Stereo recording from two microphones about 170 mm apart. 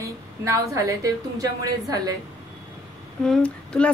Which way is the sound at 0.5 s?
20° right (ahead or behind).